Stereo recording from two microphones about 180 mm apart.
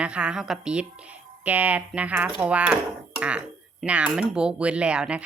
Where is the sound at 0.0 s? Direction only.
5° right (ahead or behind).